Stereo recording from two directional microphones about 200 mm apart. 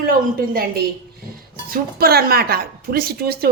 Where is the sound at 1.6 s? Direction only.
50° right (ahead or behind).